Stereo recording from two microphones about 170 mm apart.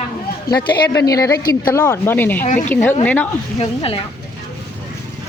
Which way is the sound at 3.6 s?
35° left (ahead or behind).